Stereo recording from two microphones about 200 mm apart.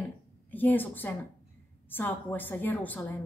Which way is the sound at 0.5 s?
10° left (ahead or behind).